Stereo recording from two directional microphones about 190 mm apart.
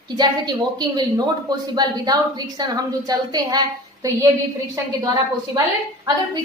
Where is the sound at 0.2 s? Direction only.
20° right (ahead or behind).